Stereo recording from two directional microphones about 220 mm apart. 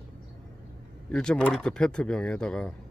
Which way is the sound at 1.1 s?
5° left (ahead or behind).